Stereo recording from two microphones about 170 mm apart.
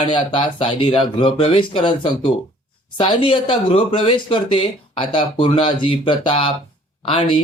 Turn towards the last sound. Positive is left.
turn(degrees=30)  # may be behind; listen again after turning